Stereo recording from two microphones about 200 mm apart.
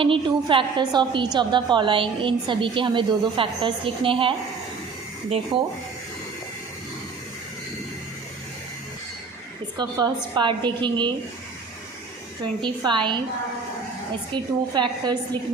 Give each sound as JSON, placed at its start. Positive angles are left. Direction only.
{"t": 0.0, "sound": "a woman's voice", "side_deg": -25}
{"t": 5.5, "sound": "a woman's voice", "side_deg": -25}
{"t": 9.7, "sound": "a woman's voice", "side_deg": -20}
{"t": 12.6, "sound": "a woman's voice", "side_deg": -25}
{"t": 14.3, "sound": "a woman's voice", "side_deg": -20}